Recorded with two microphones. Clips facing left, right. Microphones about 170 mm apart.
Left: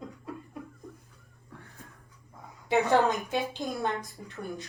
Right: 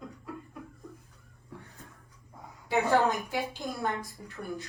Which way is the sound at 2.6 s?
20° left (ahead or behind).